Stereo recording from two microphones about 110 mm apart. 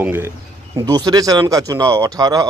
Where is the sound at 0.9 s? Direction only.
35° right (ahead or behind).